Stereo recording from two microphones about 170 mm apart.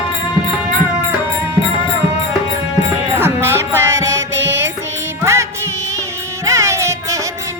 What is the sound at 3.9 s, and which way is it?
Music, 90° right.